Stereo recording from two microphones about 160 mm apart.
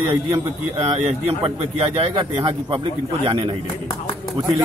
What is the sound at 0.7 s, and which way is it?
A man's voice, 40° right (ahead or behind).